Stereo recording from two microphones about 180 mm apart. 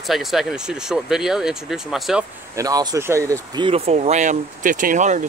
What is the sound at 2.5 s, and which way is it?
Speech, 20° right (ahead or behind).